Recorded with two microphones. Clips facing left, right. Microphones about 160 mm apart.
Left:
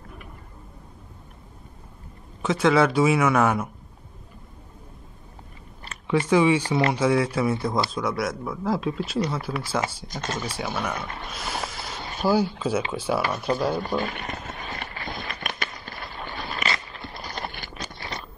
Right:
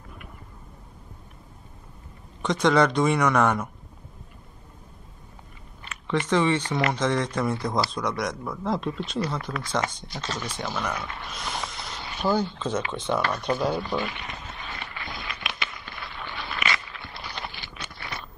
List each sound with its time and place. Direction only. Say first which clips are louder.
2.4 s speech: left 1 dB; 5° left (ahead or behind)
6.0 s speech: left 3 dB; 10° left (ahead or behind)
10.0 s speech: left 3 dB; 45° left (ahead or behind)
10.4 s speech: even; 10° left (ahead or behind)
11.2 s a sound: left 2 dB; 5° left (ahead or behind)
12.0 s a sound: left 2 dB; 40° left (ahead or behind)
12.3 s speech: left 3 dB; 10° left (ahead or behind)
13.8 s a sound: left 2 dB; 50° left (ahead or behind)
17.9 s crunch: left 1 dB; 35° left (ahead or behind)